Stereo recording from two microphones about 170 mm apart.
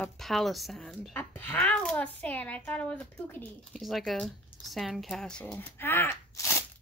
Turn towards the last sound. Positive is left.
turn(degrees=20)  # may be behind; listen again after turning